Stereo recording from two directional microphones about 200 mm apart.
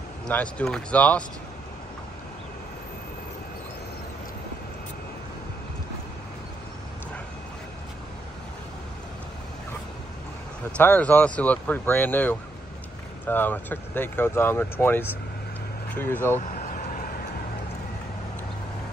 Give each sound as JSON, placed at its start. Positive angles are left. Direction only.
{"t": 0.3, "sound": "speech", "side_deg": 5}
{"t": 10.8, "sound": "speech", "side_deg": 10}
{"t": 16.3, "sound": "vehicle", "side_deg": 45}